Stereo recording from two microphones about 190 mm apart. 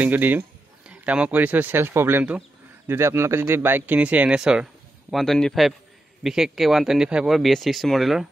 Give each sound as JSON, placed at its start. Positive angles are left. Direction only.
{"t": 0.0, "sound": "speech", "side_deg": -10}